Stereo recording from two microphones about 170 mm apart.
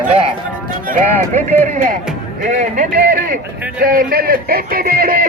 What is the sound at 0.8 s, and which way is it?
A man's voice, 50° right (ahead or behind).